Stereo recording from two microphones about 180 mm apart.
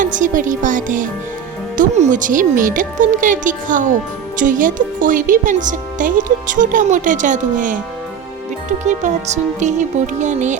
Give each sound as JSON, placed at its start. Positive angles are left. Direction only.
{"t": 0.0, "sound": "speech", "side_deg": -45}
{"t": 8.8, "sound": "music", "side_deg": -40}